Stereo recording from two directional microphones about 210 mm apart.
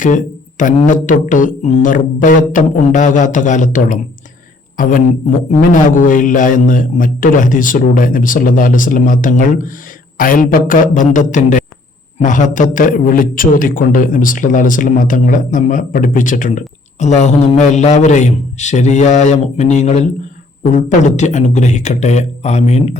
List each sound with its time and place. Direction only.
0.0 s a man's voice: 40° left (ahead or behind)